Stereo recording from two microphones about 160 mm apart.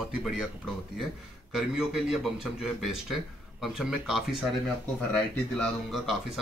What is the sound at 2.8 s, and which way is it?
Speech, centre (ahead or behind).